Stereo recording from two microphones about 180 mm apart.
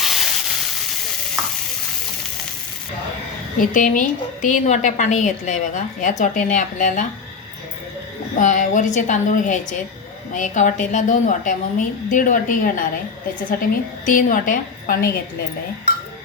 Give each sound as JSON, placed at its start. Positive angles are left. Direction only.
{"t": 0.0, "sound": "sizzle", "side_deg": 0}
{"t": 3.6, "sound": "a woman's voice", "side_deg": 50}
{"t": 8.4, "sound": "a woman's voice", "side_deg": 40}
{"t": 14.0, "sound": "a woman's voice", "side_deg": 50}